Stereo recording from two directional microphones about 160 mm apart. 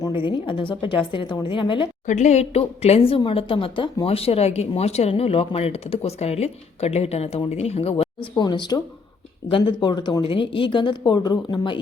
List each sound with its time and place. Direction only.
0.3 s speech: 30° left (ahead or behind)
2.0 s speech: 50° left (ahead or behind); by 11.8 s 30° left (ahead or behind)